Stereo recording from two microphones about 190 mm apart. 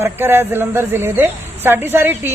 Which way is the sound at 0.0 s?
10° right (ahead or behind).